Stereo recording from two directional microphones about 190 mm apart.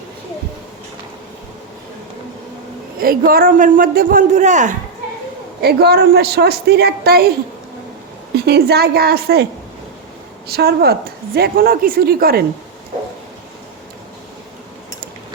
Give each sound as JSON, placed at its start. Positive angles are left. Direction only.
{"t": 3.0, "sound": "a man's voice", "side_deg": -50}
{"t": 5.6, "sound": "a woman's voice", "side_deg": -60}
{"t": 8.4, "sound": "a woman's voice", "side_deg": -60}